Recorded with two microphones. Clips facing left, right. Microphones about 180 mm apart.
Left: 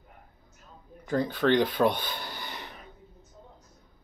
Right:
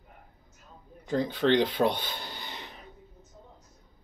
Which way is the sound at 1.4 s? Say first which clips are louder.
Even; 55° left (ahead or behind).